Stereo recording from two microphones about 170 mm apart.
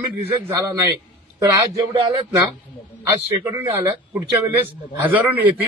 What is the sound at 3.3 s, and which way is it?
A man's voice, 15° right (ahead or behind).